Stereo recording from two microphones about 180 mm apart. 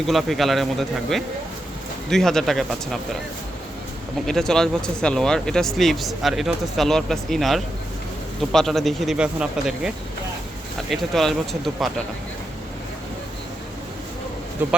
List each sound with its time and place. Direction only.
0.1 s speech: centre (ahead or behind)
4.3 s speech: 5° left (ahead or behind)
14.6 s speech: 10° right (ahead or behind)